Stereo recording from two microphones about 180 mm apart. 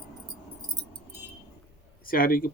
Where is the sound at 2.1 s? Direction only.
55° left (ahead or behind).